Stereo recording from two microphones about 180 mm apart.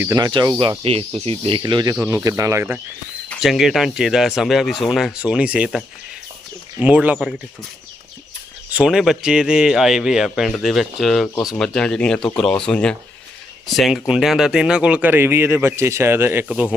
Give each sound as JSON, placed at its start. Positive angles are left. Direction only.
{"t": 0.0, "sound": "speech", "side_deg": -20}
{"t": 3.2, "sound": "speech", "side_deg": 0}
{"t": 6.8, "sound": "speech", "side_deg": -10}
{"t": 8.7, "sound": "speech", "side_deg": -5}